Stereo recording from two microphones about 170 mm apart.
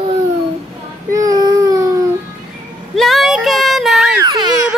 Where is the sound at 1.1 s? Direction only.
20° right (ahead or behind).